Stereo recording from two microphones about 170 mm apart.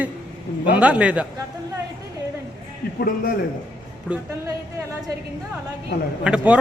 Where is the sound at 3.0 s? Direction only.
60° left (ahead or behind).